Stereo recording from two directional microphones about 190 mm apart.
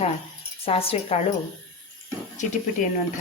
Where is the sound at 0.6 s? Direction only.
30° left (ahead or behind).